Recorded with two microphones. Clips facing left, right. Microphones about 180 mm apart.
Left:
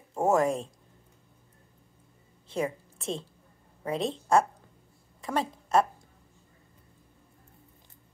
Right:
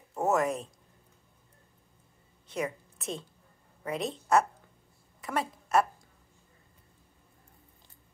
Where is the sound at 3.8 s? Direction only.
30° left (ahead or behind).